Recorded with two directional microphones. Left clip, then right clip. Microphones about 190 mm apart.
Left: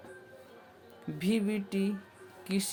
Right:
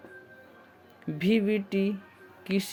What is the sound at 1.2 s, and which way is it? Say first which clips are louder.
Speech: right 6 dB; 35° right (ahead or behind).